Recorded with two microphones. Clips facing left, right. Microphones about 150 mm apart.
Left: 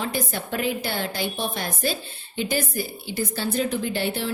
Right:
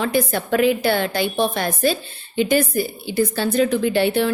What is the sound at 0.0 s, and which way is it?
A woman's voice, 75° right (ahead or behind).